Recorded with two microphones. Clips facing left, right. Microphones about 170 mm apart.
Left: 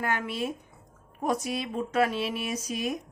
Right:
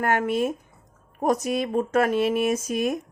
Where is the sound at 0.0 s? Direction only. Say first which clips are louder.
Right 7 dB; 50° right (ahead or behind).